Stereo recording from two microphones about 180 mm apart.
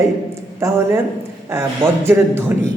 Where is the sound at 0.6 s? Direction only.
15° right (ahead or behind).